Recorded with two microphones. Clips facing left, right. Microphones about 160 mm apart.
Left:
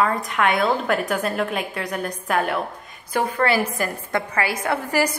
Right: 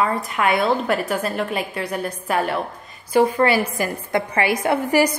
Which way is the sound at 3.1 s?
15° right (ahead or behind).